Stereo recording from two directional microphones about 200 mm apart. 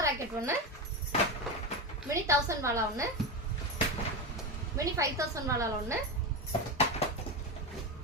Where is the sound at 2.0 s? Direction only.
15° right (ahead or behind).